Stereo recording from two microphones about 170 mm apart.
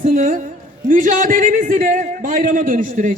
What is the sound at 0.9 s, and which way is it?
A man's voice, 50° right (ahead or behind).